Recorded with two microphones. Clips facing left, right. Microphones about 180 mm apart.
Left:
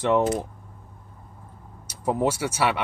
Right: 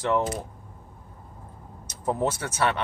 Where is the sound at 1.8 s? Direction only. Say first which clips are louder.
Left 2 dB; 10° left (ahead or behind).